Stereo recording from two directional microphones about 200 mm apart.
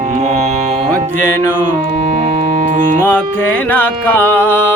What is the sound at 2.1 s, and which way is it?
Music, 35° right (ahead or behind).